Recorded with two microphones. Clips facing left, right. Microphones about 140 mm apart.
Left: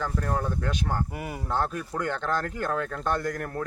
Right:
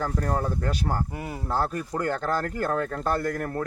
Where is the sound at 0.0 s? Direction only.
40° right (ahead or behind).